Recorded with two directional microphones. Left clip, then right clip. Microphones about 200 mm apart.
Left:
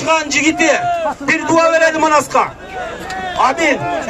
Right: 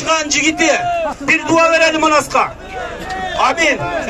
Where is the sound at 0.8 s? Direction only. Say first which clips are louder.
Left 1 dB; 10° left (ahead or behind).